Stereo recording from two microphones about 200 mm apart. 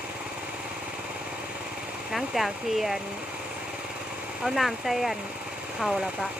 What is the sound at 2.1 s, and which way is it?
Speech, centre (ahead or behind).